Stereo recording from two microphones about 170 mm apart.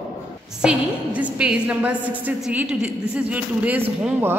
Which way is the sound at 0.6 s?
5° right (ahead or behind).